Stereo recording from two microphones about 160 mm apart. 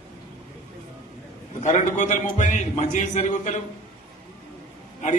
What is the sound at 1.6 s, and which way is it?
A man's voice, 50° left (ahead or behind).